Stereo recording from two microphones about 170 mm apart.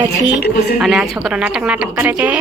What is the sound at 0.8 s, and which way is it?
A woman's voice, centre (ahead or behind).